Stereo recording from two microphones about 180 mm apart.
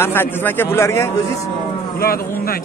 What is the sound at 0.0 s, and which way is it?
A man's voice, 10° left (ahead or behind).